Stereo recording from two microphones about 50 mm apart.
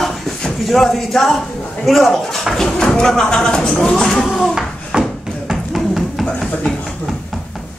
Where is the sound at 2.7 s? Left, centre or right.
Centre.